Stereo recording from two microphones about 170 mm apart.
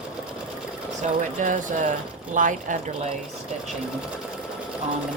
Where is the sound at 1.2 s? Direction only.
45° right (ahead or behind).